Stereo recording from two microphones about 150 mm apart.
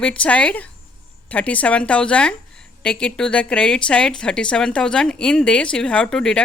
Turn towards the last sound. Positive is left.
turn(degrees=5)  # may be behind; listen again after turning